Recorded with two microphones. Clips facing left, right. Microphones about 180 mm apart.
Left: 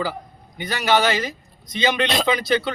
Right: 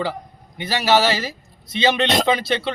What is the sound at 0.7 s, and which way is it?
Speech, 30° right (ahead or behind).